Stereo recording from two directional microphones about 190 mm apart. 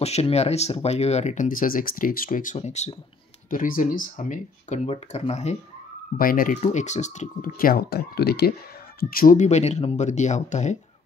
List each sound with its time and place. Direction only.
0.0 s speech: 35° left (ahead or behind)
6.1 s speech: 50° left (ahead or behind)